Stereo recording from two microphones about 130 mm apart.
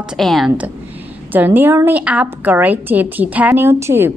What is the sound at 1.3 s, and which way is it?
A woman's voice, 15° right (ahead or behind).